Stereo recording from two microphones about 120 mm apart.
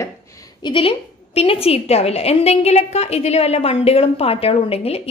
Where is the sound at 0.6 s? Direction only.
45° left (ahead or behind).